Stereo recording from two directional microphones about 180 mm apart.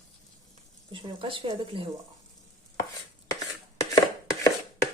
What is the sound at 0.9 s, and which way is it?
Speech, 30° right (ahead or behind).